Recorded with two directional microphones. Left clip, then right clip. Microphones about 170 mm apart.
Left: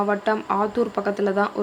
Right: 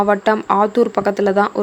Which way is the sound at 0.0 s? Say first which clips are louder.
Right 7 dB; 40° right (ahead or behind).